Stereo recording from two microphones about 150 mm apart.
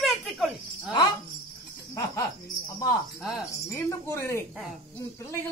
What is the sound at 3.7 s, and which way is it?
Speech, 20° left (ahead or behind).